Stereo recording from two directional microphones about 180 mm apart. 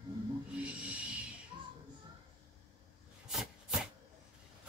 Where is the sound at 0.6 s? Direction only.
5° right (ahead or behind).